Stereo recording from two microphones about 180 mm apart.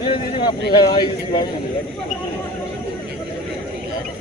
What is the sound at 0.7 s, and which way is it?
Speech, 25° left (ahead or behind).